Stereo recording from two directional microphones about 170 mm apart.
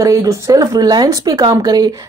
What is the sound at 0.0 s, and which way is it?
Speech, 20° right (ahead or behind).